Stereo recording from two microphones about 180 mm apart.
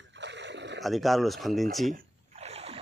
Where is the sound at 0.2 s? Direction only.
75° right (ahead or behind).